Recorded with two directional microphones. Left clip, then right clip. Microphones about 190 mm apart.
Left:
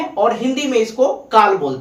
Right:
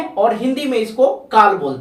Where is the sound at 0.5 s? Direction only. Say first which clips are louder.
Left 1 dB; 15° right (ahead or behind).